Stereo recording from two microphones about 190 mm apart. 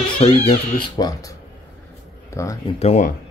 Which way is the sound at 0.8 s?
20° left (ahead or behind).